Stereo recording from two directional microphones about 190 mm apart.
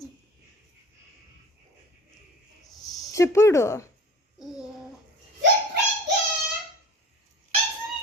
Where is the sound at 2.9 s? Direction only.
15° left (ahead or behind).